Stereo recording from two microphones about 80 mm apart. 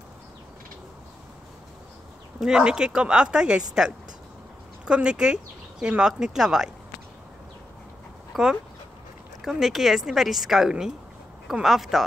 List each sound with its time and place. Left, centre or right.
2.4 s speech: centre
4.8 s speech: centre
8.3 s dog: centre
9.4 s speech: centre